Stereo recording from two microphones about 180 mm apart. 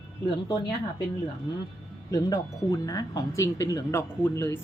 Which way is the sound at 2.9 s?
20° left (ahead or behind).